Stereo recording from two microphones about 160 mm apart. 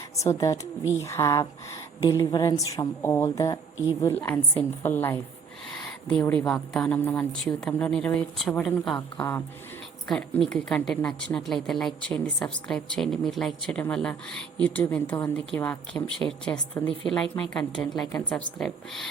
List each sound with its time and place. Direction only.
0.2 s a woman's voice: 20° left (ahead or behind)